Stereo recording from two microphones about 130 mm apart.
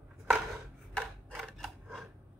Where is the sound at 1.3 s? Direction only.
Centre (ahead or behind).